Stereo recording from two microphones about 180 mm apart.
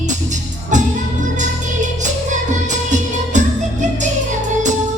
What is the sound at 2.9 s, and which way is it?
Music, 40° right (ahead or behind).